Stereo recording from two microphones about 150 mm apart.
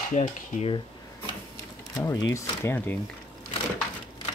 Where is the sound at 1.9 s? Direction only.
25° left (ahead or behind).